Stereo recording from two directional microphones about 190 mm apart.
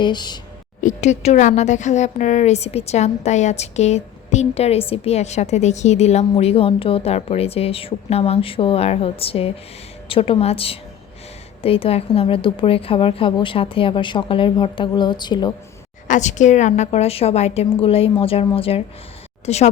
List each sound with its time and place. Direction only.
0.0 s a woman's voice: 25° left (ahead or behind)
0.8 s a woman's voice: 40° left (ahead or behind); by 15.5 s 20° left (ahead or behind)
16.0 s speech: 40° left (ahead or behind)